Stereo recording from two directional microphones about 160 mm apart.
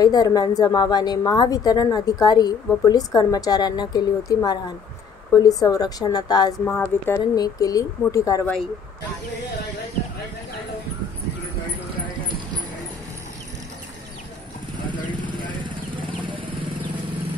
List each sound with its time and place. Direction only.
0.0 s a woman's voice: 25° left (ahead or behind)
6.6 s speech: 15° left (ahead or behind)
7.3 s a woman's voice: 25° left (ahead or behind)
15.2 s vehicle: 30° right (ahead or behind)